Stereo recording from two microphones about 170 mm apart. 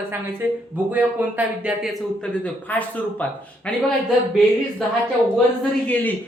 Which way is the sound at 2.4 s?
10° left (ahead or behind).